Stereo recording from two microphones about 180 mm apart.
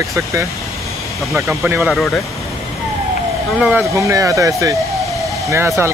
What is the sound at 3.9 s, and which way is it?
Speech, 15° right (ahead or behind).